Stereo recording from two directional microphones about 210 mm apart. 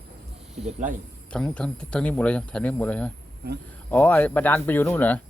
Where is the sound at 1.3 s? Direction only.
5° left (ahead or behind).